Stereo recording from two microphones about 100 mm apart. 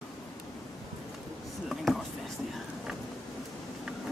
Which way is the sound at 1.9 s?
Centre (ahead or behind).